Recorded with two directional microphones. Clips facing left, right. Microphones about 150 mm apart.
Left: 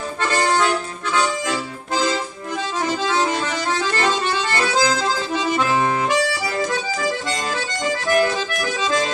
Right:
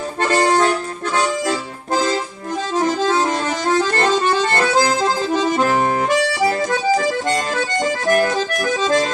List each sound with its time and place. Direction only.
0.2 s accordion: 45° right (ahead or behind)
2.8 s accordion: 45° right (ahead or behind)
8.1 s accordion: 45° right (ahead or behind)